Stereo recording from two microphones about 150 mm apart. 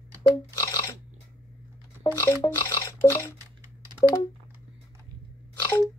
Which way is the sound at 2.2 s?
20° left (ahead or behind).